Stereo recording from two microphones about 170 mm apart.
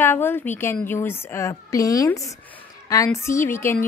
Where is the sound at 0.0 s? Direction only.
15° left (ahead or behind).